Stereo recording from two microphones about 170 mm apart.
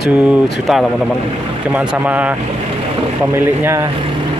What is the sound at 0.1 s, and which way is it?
Speech, 10° right (ahead or behind).